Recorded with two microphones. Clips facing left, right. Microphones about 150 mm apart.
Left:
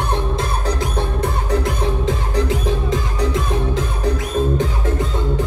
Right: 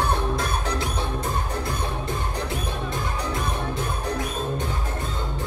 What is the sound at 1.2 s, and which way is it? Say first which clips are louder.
Music: left 7 dB; 90° left.